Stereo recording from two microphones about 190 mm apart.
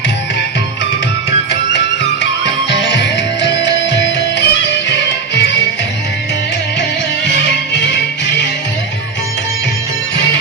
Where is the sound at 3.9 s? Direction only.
65° left (ahead or behind).